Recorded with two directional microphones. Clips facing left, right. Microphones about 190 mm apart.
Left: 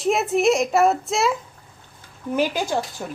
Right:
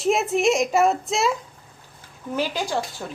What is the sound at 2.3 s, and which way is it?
Speech, 15° left (ahead or behind).